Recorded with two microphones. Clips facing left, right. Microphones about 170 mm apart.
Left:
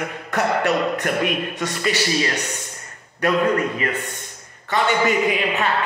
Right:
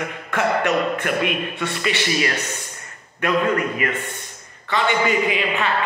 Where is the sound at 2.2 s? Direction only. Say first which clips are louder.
Even; 20° left (ahead or behind).